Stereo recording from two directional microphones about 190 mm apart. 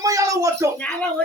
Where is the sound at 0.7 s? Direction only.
5° left (ahead or behind).